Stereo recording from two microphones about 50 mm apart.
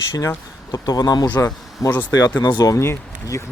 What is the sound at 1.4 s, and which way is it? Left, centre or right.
Speech, left.